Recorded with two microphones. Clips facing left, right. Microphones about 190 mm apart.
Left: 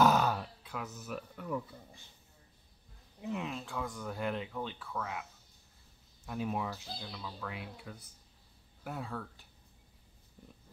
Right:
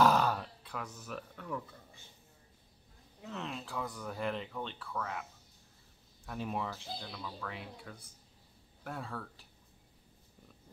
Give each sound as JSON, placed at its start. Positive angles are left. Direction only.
{"t": 0.0, "sound": "grunt", "side_deg": 0}
{"t": 3.2, "sound": "speech", "side_deg": 15}
{"t": 3.4, "sound": "speech", "side_deg": 0}
{"t": 6.2, "sound": "speech", "side_deg": 0}